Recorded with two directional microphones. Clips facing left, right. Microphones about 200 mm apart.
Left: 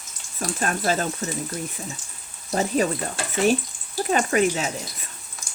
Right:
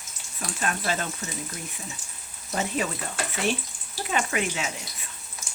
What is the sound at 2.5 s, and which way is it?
Speech, 40° left (ahead or behind).